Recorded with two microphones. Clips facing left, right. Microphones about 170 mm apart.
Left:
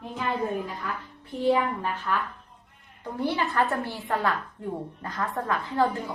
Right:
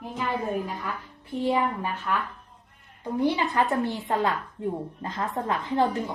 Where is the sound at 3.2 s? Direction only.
15° right (ahead or behind).